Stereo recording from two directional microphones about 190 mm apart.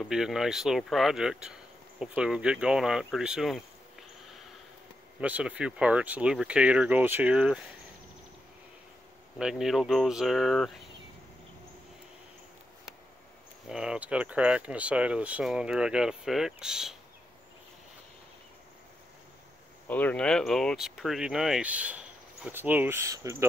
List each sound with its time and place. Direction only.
0.0 s speech: 5° right (ahead or behind)
5.2 s speech: 10° right (ahead or behind)
9.4 s speech: centre (ahead or behind)
13.7 s speech: 5° right (ahead or behind)
19.9 s speech: 10° left (ahead or behind); by 23.3 s 15° right (ahead or behind)